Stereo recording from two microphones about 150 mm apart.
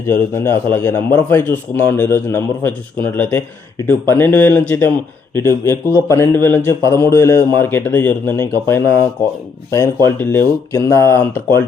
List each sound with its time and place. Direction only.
0.1 s a man's voice: 15° left (ahead or behind)